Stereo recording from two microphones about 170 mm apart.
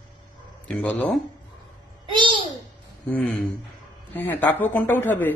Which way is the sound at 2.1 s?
30° right (ahead or behind).